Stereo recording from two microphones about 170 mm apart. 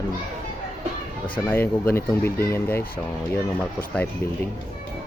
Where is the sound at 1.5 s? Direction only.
10° left (ahead or behind).